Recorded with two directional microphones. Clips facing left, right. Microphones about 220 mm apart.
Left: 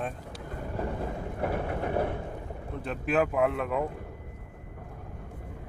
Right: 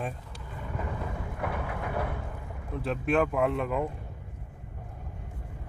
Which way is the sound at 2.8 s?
Centre (ahead or behind).